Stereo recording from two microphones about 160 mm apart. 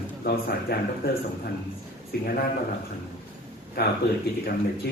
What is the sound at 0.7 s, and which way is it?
Speech, 75° left (ahead or behind).